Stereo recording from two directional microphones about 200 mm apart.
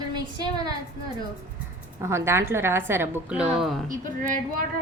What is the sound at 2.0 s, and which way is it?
A woman's voice, 15° right (ahead or behind).